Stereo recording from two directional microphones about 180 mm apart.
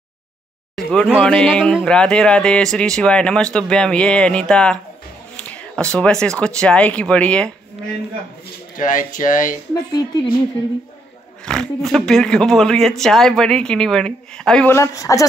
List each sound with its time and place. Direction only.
0.7 s a sound: centre (ahead or behind)
1.2 s speech: 5° left (ahead or behind)
5.3 s a sound: 5° left (ahead or behind)
5.9 s speech: 5° left (ahead or behind)
8.7 s speech: 45° left (ahead or behind)
11.4 s speech: 5° left (ahead or behind)